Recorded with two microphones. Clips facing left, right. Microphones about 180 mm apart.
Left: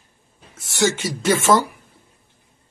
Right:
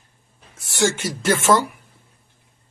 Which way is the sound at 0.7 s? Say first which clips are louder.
Left 1 dB; 10° left (ahead or behind).